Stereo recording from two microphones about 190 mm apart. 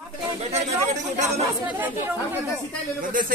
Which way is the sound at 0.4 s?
35° right (ahead or behind).